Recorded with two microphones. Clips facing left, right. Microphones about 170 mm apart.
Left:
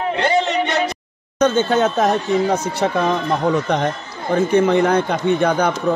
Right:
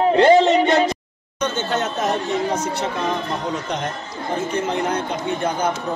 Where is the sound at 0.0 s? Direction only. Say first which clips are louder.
Right 5 dB; 30° right (ahead or behind).